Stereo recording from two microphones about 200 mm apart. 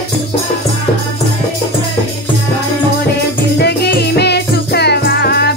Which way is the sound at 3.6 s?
55° left (ahead or behind).